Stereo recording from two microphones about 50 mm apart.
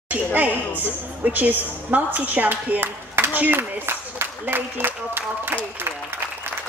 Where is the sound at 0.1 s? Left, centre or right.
Right.